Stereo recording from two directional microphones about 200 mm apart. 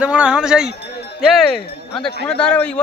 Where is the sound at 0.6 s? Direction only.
55° left (ahead or behind).